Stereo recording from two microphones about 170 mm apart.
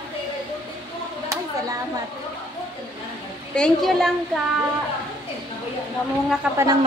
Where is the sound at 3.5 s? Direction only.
5° left (ahead or behind).